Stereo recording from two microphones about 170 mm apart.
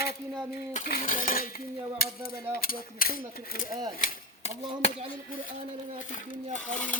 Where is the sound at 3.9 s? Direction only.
50° left (ahead or behind).